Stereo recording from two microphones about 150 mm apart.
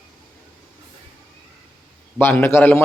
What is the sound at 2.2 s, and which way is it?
Speech, 15° left (ahead or behind).